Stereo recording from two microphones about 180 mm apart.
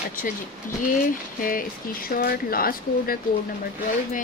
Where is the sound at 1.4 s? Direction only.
50° left (ahead or behind).